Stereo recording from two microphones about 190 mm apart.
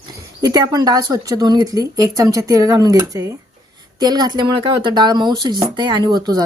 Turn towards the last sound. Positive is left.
turn(degrees=-20)  # may be behind; listen again after turning